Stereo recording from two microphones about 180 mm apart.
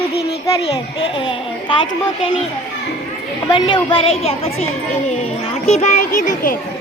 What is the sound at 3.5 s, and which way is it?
Speech, 30° left (ahead or behind).